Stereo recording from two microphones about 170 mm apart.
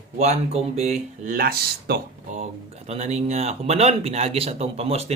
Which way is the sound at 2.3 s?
40° right (ahead or behind).